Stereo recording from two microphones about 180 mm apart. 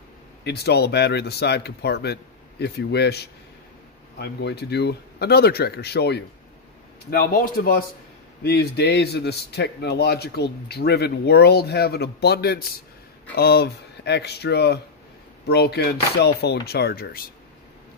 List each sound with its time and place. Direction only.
0.4 s a man's voice: 65° left (ahead or behind)
7.1 s a man's voice: 55° left (ahead or behind)